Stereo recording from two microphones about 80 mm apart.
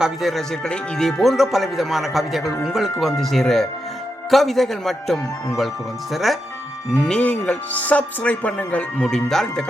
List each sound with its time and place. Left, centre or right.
0.0 s speech: centre
7.0 s speech: centre